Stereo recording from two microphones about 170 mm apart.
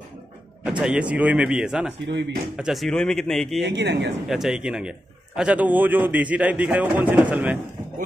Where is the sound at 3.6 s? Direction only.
90° right.